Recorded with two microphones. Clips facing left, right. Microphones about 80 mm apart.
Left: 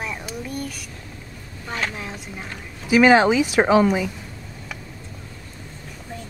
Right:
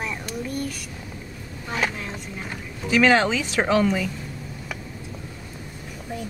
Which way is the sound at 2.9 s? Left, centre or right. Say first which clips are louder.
Left 4 dB; centre.